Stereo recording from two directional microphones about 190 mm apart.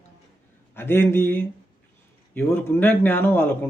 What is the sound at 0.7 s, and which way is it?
A man's voice, 10° left (ahead or behind).